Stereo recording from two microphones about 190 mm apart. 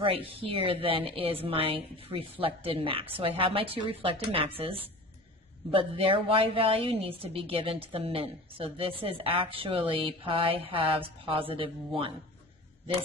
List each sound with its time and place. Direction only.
0.0 s a woman's voice: 30° right (ahead or behind)